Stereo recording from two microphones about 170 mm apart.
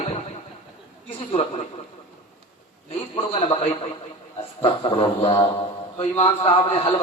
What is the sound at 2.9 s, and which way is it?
A man's voice, 35° left (ahead or behind).